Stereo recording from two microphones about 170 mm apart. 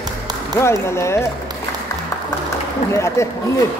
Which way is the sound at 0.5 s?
15° left (ahead or behind).